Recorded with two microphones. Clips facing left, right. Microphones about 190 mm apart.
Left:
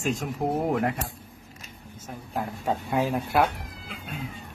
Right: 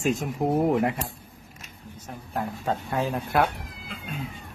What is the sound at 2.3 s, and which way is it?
Speech, 5° left (ahead or behind).